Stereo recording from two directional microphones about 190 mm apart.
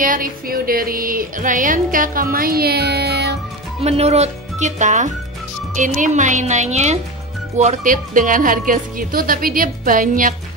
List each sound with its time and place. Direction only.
0.0 s music: 45° right (ahead or behind)
3.8 s speech: 35° right (ahead or behind)
7.5 s music: 40° right (ahead or behind)